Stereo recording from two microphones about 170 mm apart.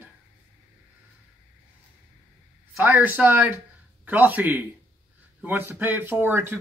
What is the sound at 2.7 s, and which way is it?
Speech, 10° right (ahead or behind).